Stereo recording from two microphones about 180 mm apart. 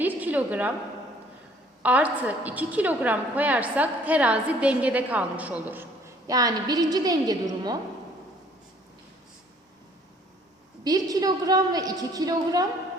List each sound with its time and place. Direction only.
0.0 s a sound: 10° right (ahead or behind)
1.8 s a woman's voice: 10° right (ahead or behind)
6.2 s a woman's voice: 20° right (ahead or behind)
10.8 s a woman's voice: 20° right (ahead or behind)